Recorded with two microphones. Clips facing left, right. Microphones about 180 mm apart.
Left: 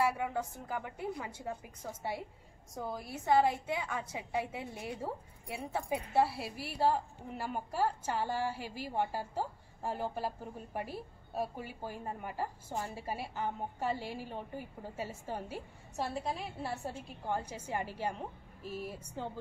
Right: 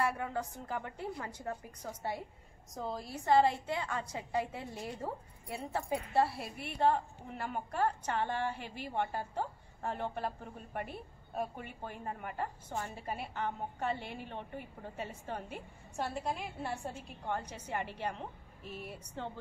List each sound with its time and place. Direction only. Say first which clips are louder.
0.0 s a woman's voice: left 2 dB; 5° left (ahead or behind)
2.8 s a woman's voice: right 1 dB; 25° right (ahead or behind)
3.3 s a woman's voice: right 1 dB; centre (ahead or behind)